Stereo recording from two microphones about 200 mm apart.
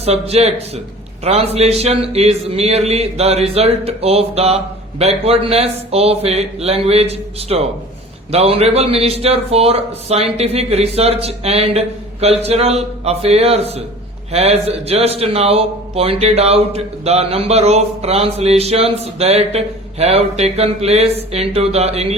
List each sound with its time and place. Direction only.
0.0 s a man's voice: 30° right (ahead or behind)